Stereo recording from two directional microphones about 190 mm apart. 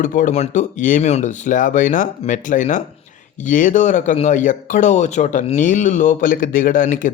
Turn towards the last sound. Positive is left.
turn(degrees=45)  # may be behind; listen again after turning